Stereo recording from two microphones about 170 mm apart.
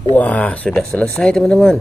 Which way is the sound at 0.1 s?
10° left (ahead or behind).